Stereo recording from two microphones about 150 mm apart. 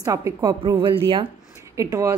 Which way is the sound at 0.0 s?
20° right (ahead or behind).